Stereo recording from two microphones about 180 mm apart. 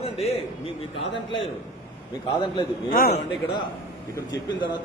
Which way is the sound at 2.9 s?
50° left (ahead or behind).